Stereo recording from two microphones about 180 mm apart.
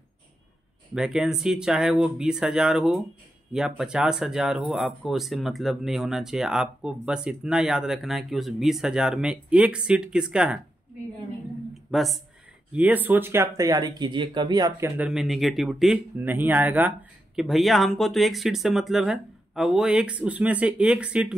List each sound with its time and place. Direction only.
0.9 s speech: 5° right (ahead or behind)
11.9 s speech: centre (ahead or behind); by 14.9 s 20° right (ahead or behind)
15.0 s speech: centre (ahead or behind)